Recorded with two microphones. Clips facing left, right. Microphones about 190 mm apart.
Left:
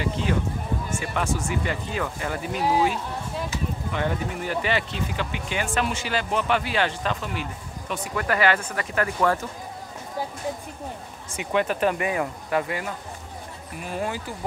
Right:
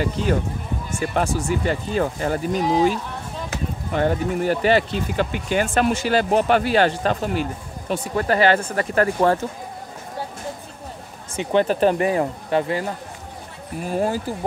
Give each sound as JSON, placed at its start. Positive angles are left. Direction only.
{"t": 0.0, "sound": "speech", "side_deg": -45}
{"t": 7.9, "sound": "speech", "side_deg": -30}
{"t": 11.3, "sound": "speech", "side_deg": -30}